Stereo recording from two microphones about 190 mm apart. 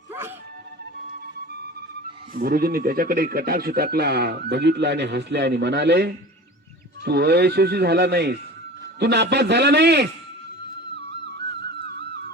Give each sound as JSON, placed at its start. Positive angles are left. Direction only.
{"t": 0.1, "sound": "music", "side_deg": -10}
{"t": 2.3, "sound": "speech", "side_deg": -50}
{"t": 10.9, "sound": "music", "side_deg": -65}